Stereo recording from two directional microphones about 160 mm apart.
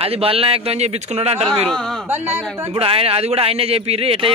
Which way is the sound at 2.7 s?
35° right (ahead or behind).